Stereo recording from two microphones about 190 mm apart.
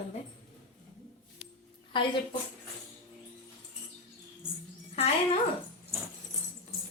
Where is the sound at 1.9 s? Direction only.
25° left (ahead or behind).